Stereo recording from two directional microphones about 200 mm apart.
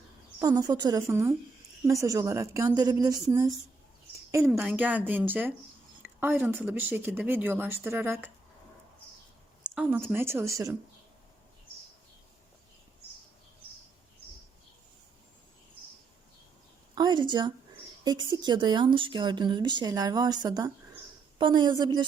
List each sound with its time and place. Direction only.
0.3 s speech: 15° right (ahead or behind)
4.3 s speech: 15° right (ahead or behind)
6.0 s a sound: 10° right (ahead or behind)
6.7 s speech: 10° right (ahead or behind)
9.6 s speech: 5° right (ahead or behind)
16.9 s a sound: 20° right (ahead or behind)
18.0 s speech: 20° right (ahead or behind)